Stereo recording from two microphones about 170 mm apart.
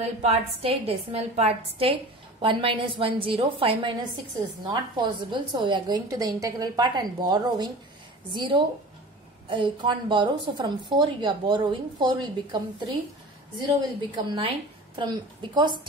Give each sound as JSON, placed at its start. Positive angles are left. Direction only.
{"t": 0.0, "sound": "a woman's voice", "side_deg": -40}
{"t": 14.1, "sound": "a woman's voice", "side_deg": -30}